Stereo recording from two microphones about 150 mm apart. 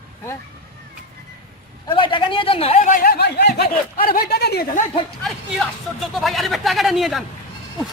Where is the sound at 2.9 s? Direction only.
80° left.